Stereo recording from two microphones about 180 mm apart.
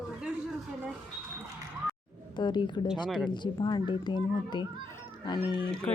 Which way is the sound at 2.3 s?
25° left (ahead or behind).